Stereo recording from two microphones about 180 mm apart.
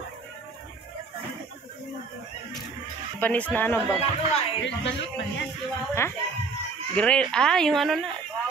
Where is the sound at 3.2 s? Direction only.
10° left (ahead or behind).